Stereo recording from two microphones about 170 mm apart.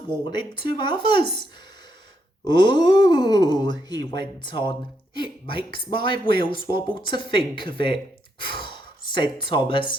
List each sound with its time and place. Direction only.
0.1 s speech: 25° left (ahead or behind)
8.4 s sigh: 30° left (ahead or behind)
9.1 s speech: 30° left (ahead or behind)